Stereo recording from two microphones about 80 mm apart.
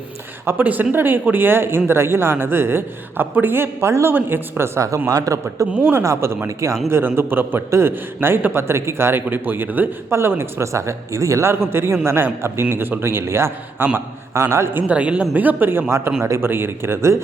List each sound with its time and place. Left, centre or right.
0.4 s a man's voice: right